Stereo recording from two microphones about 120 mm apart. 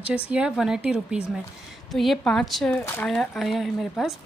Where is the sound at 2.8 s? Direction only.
15° left (ahead or behind).